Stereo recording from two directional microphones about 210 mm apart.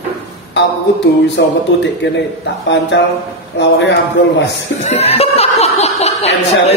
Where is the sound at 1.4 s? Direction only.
55° left (ahead or behind).